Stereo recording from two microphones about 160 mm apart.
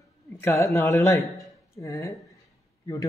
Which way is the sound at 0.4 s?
15° left (ahead or behind).